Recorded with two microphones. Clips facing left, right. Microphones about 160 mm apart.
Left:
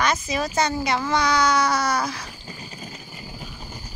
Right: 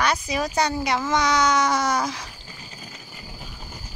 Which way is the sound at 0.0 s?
10° right (ahead or behind).